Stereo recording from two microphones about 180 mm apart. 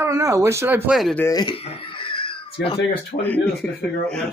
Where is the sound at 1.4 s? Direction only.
30° left (ahead or behind).